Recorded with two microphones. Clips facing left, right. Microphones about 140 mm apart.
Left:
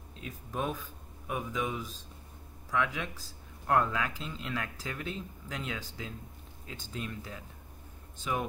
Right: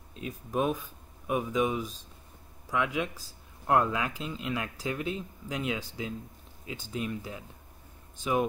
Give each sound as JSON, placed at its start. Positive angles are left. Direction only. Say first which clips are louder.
{"t": 0.2, "sound": "speech", "louder": "right 6 dB", "side_deg": -15}